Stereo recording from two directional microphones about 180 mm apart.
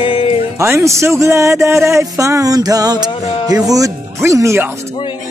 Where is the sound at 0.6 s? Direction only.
15° right (ahead or behind).